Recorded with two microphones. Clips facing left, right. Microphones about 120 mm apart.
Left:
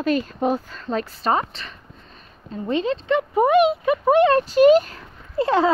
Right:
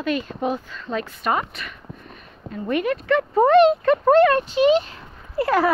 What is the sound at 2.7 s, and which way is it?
Speech, 25° left (ahead or behind).